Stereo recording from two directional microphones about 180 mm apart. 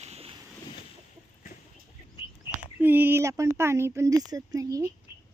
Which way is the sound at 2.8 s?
10° right (ahead or behind).